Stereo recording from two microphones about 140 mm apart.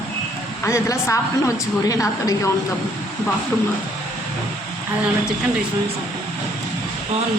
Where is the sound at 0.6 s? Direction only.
20° left (ahead or behind).